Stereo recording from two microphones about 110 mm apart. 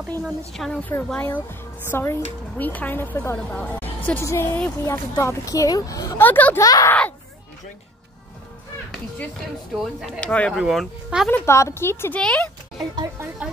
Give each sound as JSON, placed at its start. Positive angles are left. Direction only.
{"t": 0.5, "sound": "a woman's voice", "side_deg": 5}
{"t": 3.3, "sound": "a woman's voice", "side_deg": 10}
{"t": 6.1, "sound": "a woman's voice", "side_deg": 15}
{"t": 6.6, "sound": "speech", "side_deg": 30}
{"t": 9.9, "sound": "speech", "side_deg": 0}
{"t": 10.2, "sound": "a woman's voice", "side_deg": 10}
{"t": 10.5, "sound": "speech", "side_deg": 0}
{"t": 11.2, "sound": "a woman's voice", "side_deg": 15}
{"t": 12.2, "sound": "a woman's voice", "side_deg": 10}
{"t": 12.7, "sound": "music", "side_deg": -40}